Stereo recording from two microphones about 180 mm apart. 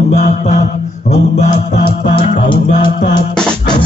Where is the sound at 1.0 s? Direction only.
45° left (ahead or behind).